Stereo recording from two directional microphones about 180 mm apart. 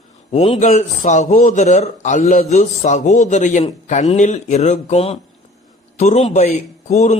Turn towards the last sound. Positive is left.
turn(degrees=40)  # may be behind; listen again after turning